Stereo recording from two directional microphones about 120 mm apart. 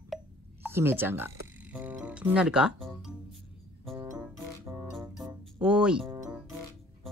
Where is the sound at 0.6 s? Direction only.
20° right (ahead or behind).